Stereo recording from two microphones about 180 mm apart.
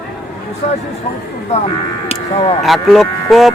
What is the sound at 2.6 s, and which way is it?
Speech, centre (ahead or behind).